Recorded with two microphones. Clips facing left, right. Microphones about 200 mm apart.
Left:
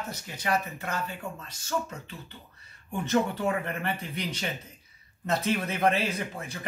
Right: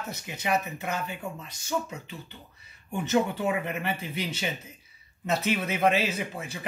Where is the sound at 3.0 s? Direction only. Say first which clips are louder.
Right 1 dB; 5° right (ahead or behind).